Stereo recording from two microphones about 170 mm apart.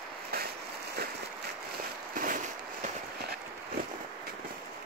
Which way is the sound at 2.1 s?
50° right (ahead or behind).